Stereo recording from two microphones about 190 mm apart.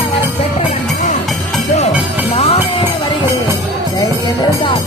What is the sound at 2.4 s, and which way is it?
Music, 30° left (ahead or behind).